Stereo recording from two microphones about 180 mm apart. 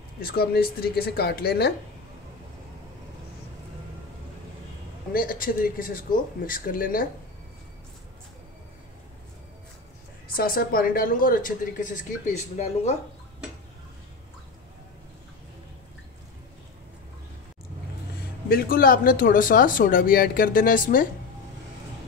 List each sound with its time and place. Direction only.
0.2 s speech: 60° left (ahead or behind)
5.1 s speech: 55° left (ahead or behind)
10.2 s speech: 55° left (ahead or behind)
18.5 s speech: 55° left (ahead or behind)